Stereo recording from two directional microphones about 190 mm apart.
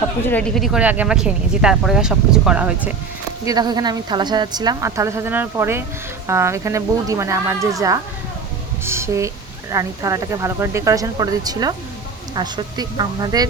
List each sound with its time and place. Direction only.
0.3 s speech: 5° left (ahead or behind)
3.4 s a woman's voice: 20° right (ahead or behind)